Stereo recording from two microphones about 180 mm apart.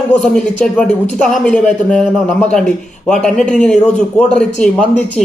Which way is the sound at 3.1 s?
5° left (ahead or behind).